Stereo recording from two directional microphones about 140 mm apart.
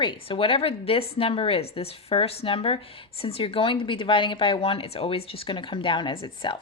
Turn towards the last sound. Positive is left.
turn(degrees=35)  # may be behind; listen again after turning